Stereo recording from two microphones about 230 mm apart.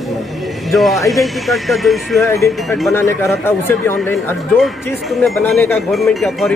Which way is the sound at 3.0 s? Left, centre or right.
Centre.